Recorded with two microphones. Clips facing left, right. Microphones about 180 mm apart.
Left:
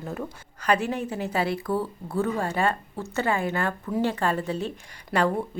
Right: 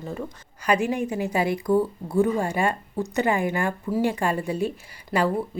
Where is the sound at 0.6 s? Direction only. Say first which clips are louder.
Right 2 dB; 10° right (ahead or behind).